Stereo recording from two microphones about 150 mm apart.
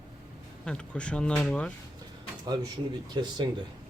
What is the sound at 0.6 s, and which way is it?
Speech, 5° left (ahead or behind).